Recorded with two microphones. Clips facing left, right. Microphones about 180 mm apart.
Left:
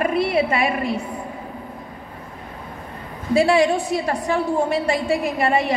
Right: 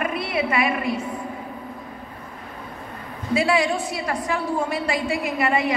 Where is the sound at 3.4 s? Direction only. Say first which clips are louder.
Left 5 dB; 30° left (ahead or behind).